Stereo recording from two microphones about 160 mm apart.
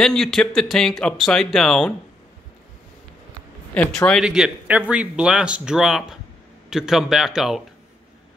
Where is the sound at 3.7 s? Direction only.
10° left (ahead or behind).